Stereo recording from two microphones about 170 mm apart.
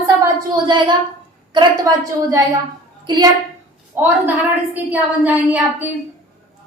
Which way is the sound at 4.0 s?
15° right (ahead or behind).